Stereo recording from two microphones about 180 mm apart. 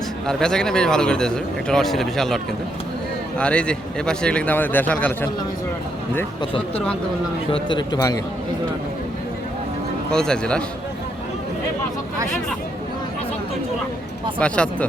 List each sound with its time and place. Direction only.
0.3 s a man's voice: 5° left (ahead or behind)
6.4 s speech: 30° left (ahead or behind)
10.1 s speech: 5° left (ahead or behind)
14.3 s a man's voice: 5° left (ahead or behind)